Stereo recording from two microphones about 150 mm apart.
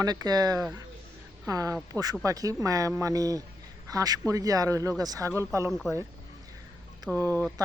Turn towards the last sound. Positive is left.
turn(degrees=15)  # may be behind; listen again after turning